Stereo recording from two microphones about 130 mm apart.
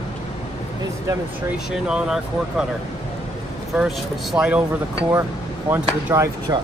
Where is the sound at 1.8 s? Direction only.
5° right (ahead or behind).